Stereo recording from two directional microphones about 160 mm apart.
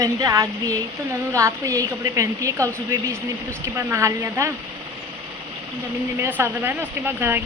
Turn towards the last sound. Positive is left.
turn(degrees=-15)  # may be behind; listen again after turning